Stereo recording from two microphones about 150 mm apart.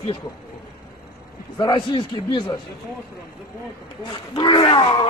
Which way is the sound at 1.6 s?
35° left (ahead or behind).